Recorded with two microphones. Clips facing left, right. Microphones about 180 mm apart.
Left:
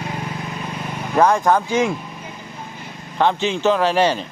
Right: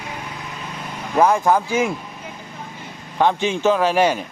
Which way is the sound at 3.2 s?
15° right (ahead or behind).